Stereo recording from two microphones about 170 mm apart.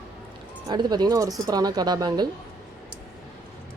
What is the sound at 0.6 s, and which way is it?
Speech, 25° right (ahead or behind).